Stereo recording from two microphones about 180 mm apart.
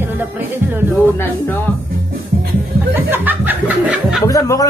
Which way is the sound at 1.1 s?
10° left (ahead or behind).